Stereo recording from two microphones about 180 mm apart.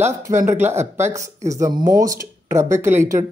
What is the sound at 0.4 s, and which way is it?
Speech, 15° right (ahead or behind).